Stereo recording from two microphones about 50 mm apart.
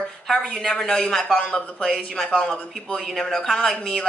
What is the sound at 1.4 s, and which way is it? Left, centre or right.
Speech, centre.